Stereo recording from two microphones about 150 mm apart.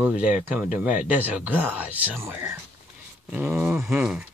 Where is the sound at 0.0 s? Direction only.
10° right (ahead or behind).